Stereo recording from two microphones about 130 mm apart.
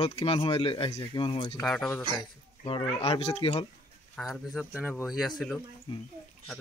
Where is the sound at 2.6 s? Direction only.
45° left (ahead or behind).